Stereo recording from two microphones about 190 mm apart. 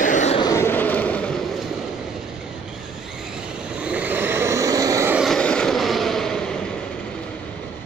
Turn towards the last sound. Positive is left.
turn(degrees=5)  # may be behind; listen again after turning